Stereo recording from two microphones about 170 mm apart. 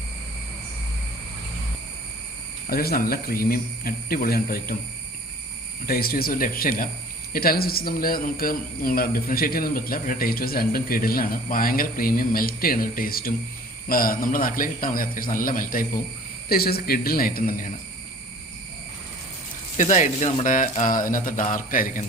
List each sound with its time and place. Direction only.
2.6 s speech: 60° left (ahead or behind)
5.8 s speech: 60° left (ahead or behind)
16.5 s speech: 65° left (ahead or behind)
19.7 s speech: 45° left (ahead or behind)